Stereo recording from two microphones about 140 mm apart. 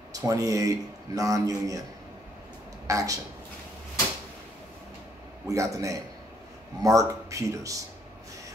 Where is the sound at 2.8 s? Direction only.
25° right (ahead or behind).